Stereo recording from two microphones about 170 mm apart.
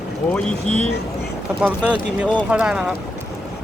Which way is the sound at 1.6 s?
5° right (ahead or behind).